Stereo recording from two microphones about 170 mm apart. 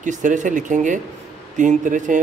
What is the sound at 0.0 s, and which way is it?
Speech, 50° right (ahead or behind).